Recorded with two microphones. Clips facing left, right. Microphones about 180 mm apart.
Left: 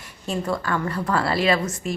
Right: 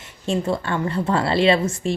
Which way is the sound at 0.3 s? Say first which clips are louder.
Right 3 dB; 25° right (ahead or behind).